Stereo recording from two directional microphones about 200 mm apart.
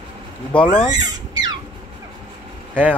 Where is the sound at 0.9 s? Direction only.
20° right (ahead or behind).